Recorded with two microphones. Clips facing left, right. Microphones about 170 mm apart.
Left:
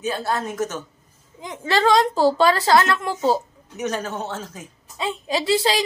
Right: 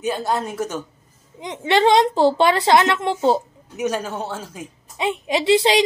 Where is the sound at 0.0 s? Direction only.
15° right (ahead or behind).